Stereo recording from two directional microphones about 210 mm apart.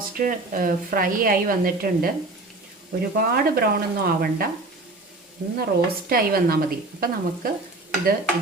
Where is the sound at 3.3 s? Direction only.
45° right (ahead or behind).